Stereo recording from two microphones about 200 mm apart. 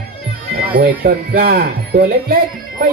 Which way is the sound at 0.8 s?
50° right (ahead or behind).